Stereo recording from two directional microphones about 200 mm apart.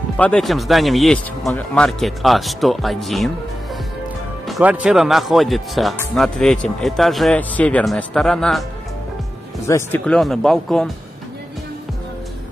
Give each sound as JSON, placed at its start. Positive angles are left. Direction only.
{"t": 0.2, "sound": "speech", "side_deg": 5}
{"t": 4.5, "sound": "speech", "side_deg": -5}
{"t": 9.7, "sound": "speech", "side_deg": 10}